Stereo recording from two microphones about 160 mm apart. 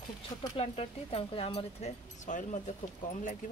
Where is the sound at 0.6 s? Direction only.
40° left (ahead or behind).